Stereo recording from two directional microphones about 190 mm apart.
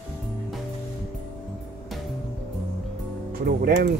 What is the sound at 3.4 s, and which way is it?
Speech, 55° right (ahead or behind).